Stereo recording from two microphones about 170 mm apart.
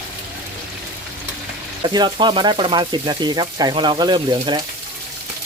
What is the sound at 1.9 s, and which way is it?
Speech, 25° right (ahead or behind).